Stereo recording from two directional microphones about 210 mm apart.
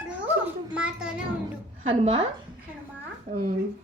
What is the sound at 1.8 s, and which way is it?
A woman's voice, 35° right (ahead or behind).